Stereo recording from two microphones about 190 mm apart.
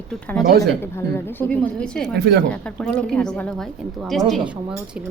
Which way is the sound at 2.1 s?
65° right (ahead or behind).